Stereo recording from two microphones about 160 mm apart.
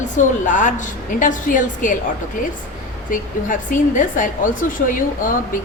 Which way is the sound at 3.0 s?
60° left (ahead or behind).